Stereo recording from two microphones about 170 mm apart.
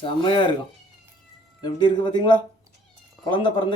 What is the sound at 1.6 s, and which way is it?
A man's voice, 30° left (ahead or behind).